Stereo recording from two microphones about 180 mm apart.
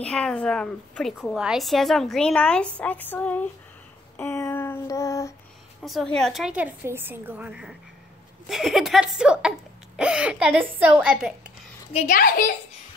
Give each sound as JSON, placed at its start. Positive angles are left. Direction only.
{"t": 0.0, "sound": "a woman's voice", "side_deg": 5}
{"t": 4.2, "sound": "child singing", "side_deg": 15}
{"t": 5.8, "sound": "a woman's voice", "side_deg": 0}
{"t": 12.1, "sound": "a child's voice", "side_deg": 50}